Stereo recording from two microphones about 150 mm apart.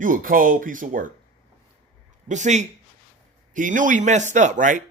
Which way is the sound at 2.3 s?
55° right (ahead or behind).